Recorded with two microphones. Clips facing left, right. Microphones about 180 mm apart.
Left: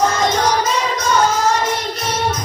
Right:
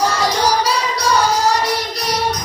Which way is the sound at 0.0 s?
35° right (ahead or behind).